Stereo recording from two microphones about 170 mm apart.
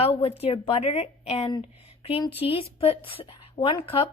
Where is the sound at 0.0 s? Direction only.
35° left (ahead or behind).